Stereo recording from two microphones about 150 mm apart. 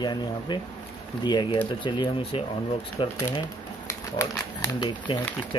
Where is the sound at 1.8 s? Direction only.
30° left (ahead or behind).